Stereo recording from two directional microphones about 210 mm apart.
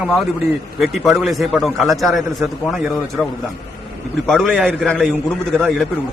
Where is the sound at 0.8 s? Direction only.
Centre (ahead or behind).